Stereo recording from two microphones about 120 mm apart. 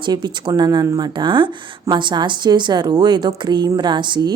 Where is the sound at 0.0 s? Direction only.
40° right (ahead or behind).